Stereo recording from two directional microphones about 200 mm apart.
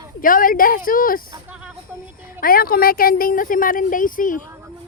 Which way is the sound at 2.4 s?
45° left (ahead or behind).